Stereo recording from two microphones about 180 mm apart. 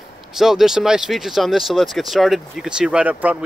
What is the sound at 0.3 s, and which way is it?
Speech, centre (ahead or behind).